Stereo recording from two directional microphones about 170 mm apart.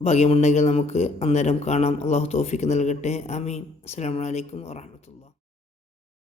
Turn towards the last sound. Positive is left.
turn(degrees=40)  # may be behind; listen again after turning